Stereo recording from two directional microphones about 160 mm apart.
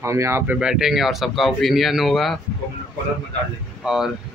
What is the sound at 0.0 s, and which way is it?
Speech, 15° right (ahead or behind).